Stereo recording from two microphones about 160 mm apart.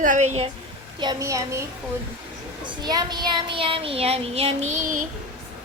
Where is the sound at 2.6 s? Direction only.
25° right (ahead or behind); by 4.8 s 45° right (ahead or behind).